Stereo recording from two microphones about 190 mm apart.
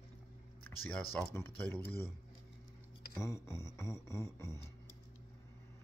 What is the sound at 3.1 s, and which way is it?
Music, 15° left (ahead or behind).